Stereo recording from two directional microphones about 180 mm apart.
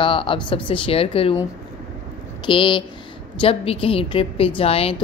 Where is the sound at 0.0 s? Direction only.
30° left (ahead or behind).